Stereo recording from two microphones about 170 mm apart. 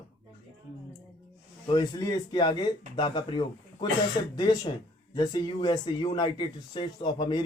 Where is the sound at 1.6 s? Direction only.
25° left (ahead or behind).